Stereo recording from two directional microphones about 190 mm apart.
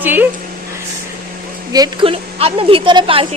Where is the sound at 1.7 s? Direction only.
20° right (ahead or behind).